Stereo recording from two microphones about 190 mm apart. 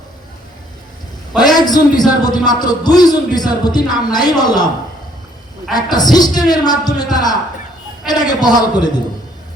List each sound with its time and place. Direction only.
1.5 s a man's voice: 20° left (ahead or behind)
5.7 s a man's voice: 20° left (ahead or behind)